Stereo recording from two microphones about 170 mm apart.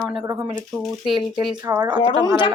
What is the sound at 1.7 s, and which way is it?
Speech, 15° right (ahead or behind).